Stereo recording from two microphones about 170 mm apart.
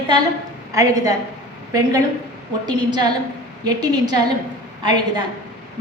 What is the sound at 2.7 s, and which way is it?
A woman's voice, 25° right (ahead or behind).